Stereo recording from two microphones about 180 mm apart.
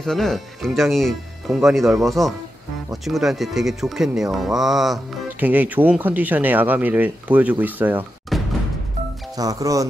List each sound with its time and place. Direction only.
0.0 s speech: centre (ahead or behind)
8.3 s music: centre (ahead or behind)
9.4 s speech: 20° right (ahead or behind)